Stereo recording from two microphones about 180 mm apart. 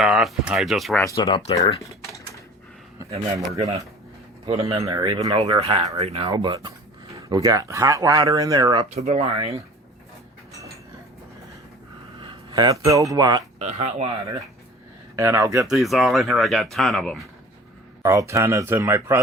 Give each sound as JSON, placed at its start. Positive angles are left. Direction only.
{"t": 0.0, "sound": "speech", "side_deg": 0}
{"t": 1.0, "sound": "speech", "side_deg": 20}
{"t": 3.4, "sound": "speech", "side_deg": -20}
{"t": 9.0, "sound": "speech", "side_deg": -35}
{"t": 12.2, "sound": "speech", "side_deg": -25}
{"t": 13.6, "sound": "speech", "side_deg": -35}
{"t": 15.1, "sound": "speech", "side_deg": -15}
{"t": 15.7, "sound": "speech", "side_deg": 0}
{"t": 18.0, "sound": "speech", "side_deg": -15}